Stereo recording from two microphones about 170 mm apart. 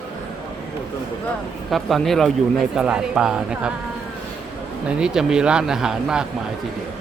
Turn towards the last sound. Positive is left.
turn(degrees=-5)  # may be behind; listen again after turning